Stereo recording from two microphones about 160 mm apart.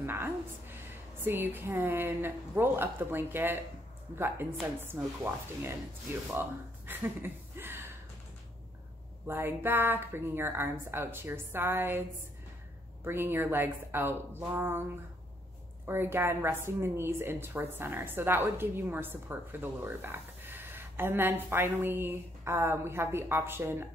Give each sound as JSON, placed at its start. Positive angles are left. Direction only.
{"t": 0.0, "sound": "a sound", "side_deg": -15}
{"t": 1.2, "sound": "a woman's voice", "side_deg": -15}
{"t": 6.9, "sound": "a sound", "side_deg": -15}
{"t": 9.3, "sound": "a woman's voice", "side_deg": -15}
{"t": 13.0, "sound": "a woman's voice", "side_deg": -15}
{"t": 15.9, "sound": "a woman's voice", "side_deg": -15}